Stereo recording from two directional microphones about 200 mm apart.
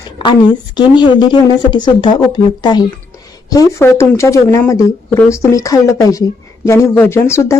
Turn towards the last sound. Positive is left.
turn(degrees=15)  # may be behind; listen again after turning